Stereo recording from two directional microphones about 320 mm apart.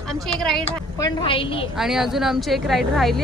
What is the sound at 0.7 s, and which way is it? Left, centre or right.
Speech, centre.